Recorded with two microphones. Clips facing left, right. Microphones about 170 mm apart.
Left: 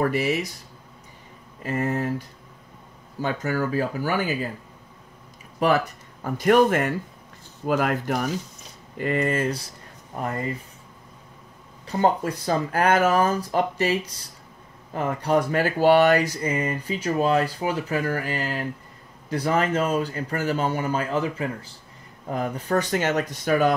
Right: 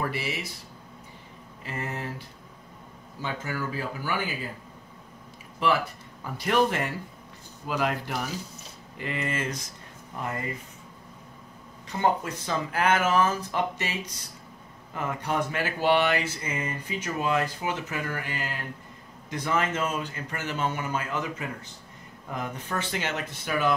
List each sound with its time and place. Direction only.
0.0 s speech: 45° left (ahead or behind)
1.7 s speech: 45° left (ahead or behind)
6.2 s speech: 50° left (ahead or behind)
11.9 s speech: 35° left (ahead or behind)
15.0 s speech: 35° left (ahead or behind)